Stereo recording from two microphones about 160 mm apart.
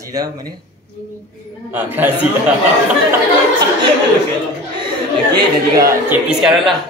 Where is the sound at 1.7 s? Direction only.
10° right (ahead or behind).